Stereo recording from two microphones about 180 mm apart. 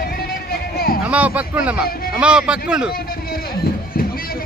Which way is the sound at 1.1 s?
10° right (ahead or behind).